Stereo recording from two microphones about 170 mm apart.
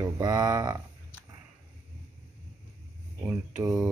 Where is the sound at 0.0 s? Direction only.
25° right (ahead or behind).